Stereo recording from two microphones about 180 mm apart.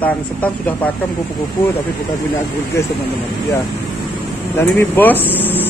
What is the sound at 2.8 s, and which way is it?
Speech, 15° left (ahead or behind).